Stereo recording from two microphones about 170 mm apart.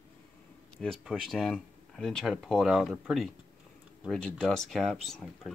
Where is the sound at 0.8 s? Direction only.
Centre (ahead or behind).